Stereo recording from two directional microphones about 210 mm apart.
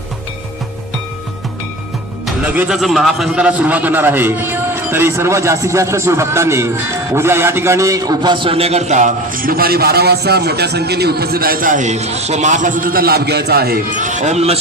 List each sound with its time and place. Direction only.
2.2 s a man's voice: 5° right (ahead or behind); by 14.6 s 30° right (ahead or behind)